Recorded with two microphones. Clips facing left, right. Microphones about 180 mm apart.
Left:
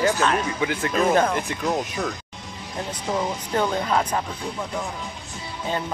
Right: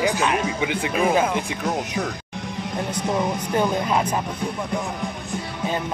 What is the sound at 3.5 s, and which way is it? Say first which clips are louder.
Speech: even; 15° right (ahead or behind).